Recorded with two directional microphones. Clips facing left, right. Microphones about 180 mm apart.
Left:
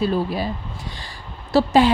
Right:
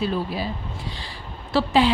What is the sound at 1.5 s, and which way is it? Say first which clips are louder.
Speech: left 4 dB; 45° left (ahead or behind).